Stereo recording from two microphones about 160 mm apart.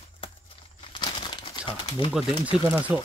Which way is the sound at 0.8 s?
30° left (ahead or behind).